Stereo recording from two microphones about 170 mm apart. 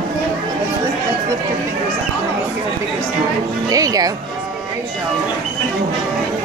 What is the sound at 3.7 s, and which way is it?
Speech, 20° right (ahead or behind).